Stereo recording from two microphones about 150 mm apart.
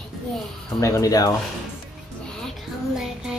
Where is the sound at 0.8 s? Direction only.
20° left (ahead or behind).